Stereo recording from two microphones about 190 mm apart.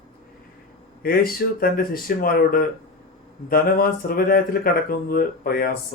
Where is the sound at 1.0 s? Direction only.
50° left (ahead or behind).